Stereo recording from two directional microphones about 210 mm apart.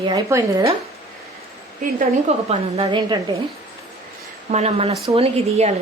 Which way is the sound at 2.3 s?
25° right (ahead or behind).